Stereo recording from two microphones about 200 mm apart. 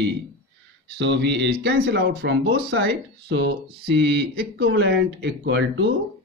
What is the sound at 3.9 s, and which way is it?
Speech, 60° right (ahead or behind).